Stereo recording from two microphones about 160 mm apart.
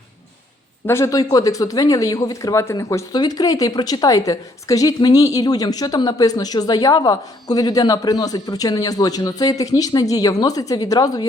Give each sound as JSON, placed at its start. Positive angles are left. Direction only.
{"t": 0.9, "sound": "speech", "side_deg": 20}